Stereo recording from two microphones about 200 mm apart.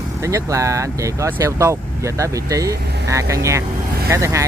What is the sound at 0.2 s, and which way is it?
Speech, 15° right (ahead or behind).